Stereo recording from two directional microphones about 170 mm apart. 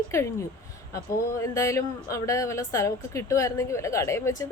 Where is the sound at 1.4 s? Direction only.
15° left (ahead or behind).